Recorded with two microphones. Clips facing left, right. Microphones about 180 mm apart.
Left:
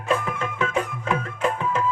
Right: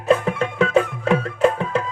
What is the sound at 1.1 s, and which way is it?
Music, 35° right (ahead or behind).